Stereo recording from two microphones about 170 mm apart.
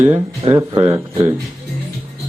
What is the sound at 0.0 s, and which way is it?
Speech, 10° right (ahead or behind).